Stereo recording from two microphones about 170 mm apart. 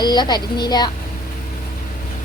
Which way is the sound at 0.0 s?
25° left (ahead or behind).